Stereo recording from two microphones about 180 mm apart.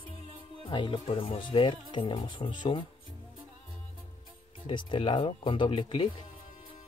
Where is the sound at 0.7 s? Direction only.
25° left (ahead or behind).